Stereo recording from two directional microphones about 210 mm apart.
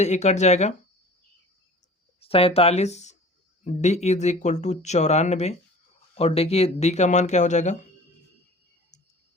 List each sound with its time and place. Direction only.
0.0 s speech: 35° left (ahead or behind)
2.2 s speech: 25° left (ahead or behind)
8.9 s a sound: 35° left (ahead or behind)